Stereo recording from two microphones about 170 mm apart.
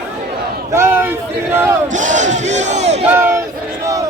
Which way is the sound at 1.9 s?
45° right (ahead or behind).